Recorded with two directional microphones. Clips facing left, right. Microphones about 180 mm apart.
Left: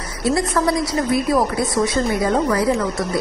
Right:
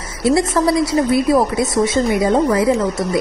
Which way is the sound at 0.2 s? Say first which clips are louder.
Right 4 dB; 25° right (ahead or behind).